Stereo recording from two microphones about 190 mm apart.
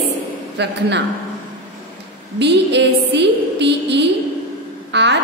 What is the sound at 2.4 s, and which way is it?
A woman's voice, 65° right (ahead or behind).